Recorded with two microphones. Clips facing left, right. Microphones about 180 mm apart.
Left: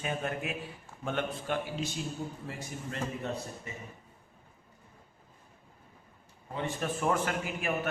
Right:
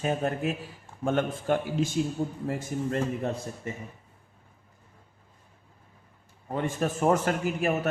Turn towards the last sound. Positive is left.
turn(degrees=-40)  # may be behind; listen again after turning